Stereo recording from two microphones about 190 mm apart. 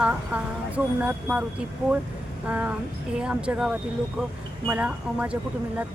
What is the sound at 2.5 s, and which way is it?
Speech, 10° right (ahead or behind).